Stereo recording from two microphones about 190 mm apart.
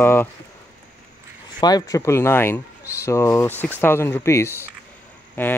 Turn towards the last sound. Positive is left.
turn(degrees=10)  # may be behind; listen again after turning